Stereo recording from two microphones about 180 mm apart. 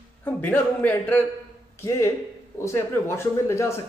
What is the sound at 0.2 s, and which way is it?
A man's voice, 10° left (ahead or behind).